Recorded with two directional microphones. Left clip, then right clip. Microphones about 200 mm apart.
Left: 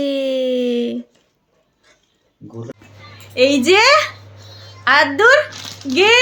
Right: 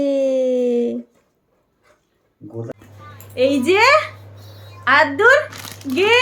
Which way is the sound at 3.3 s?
40° left (ahead or behind).